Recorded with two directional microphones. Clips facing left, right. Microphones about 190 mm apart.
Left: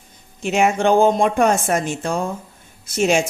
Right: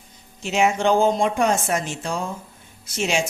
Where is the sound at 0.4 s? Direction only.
55° left (ahead or behind).